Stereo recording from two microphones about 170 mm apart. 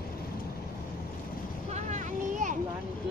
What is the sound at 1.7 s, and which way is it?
Vehicle, 45° right (ahead or behind).